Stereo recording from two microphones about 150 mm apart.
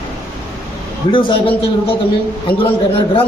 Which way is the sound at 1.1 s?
35° left (ahead or behind).